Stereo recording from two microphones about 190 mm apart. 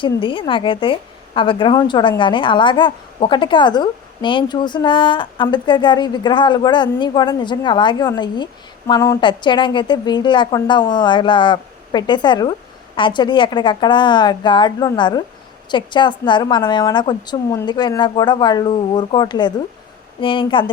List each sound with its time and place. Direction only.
0.0 s a woman's voice: 25° left (ahead or behind)